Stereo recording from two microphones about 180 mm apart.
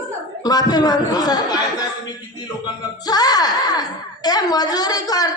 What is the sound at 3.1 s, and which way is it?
A woman's voice, 20° left (ahead or behind).